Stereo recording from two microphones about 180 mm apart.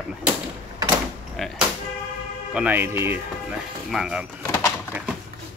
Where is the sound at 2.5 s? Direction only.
10° right (ahead or behind).